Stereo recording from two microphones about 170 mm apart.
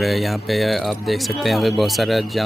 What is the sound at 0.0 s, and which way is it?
Speech, centre (ahead or behind).